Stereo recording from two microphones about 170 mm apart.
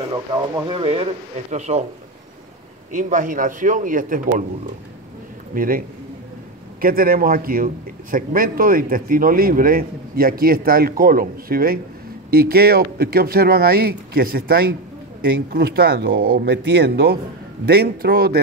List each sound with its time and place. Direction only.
0.7 s a man's voice: 30° right (ahead or behind)
2.9 s a man's voice: 50° right (ahead or behind)
5.5 s a man's voice: 55° right (ahead or behind)